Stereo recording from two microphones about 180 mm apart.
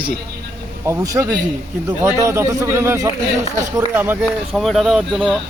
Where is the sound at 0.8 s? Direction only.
15° right (ahead or behind).